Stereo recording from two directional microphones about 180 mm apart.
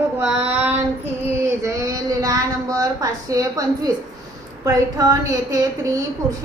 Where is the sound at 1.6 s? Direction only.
15° right (ahead or behind).